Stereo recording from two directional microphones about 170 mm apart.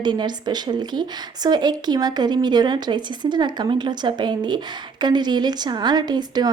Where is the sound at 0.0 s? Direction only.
25° right (ahead or behind).